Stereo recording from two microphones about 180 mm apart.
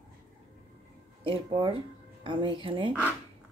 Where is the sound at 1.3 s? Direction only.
30° right (ahead or behind).